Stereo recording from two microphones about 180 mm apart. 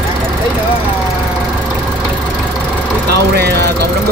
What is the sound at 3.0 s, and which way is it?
Vehicle, 60° right (ahead or behind).